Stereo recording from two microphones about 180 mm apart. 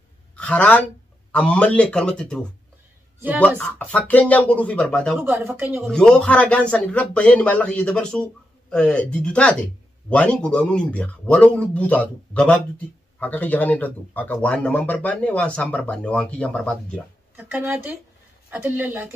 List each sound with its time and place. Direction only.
0.4 s speech: 5° left (ahead or behind)
5.2 s speech: 15° right (ahead or behind)
5.8 s speech: 5° left (ahead or behind)
17.5 s speech: 10° right (ahead or behind)